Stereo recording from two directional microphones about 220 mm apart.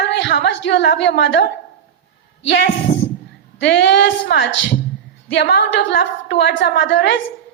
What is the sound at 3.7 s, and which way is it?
A woman's voice, 50° left (ahead or behind).